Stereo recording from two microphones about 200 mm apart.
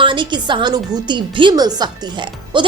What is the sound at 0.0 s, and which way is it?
A woman's voice, 25° right (ahead or behind).